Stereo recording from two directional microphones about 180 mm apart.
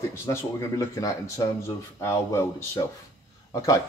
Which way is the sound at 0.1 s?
15° left (ahead or behind).